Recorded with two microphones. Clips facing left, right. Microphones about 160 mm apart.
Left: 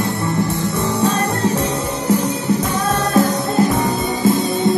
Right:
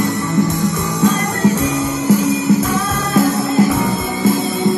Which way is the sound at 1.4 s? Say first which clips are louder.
Right 6 dB; 15° right (ahead or behind).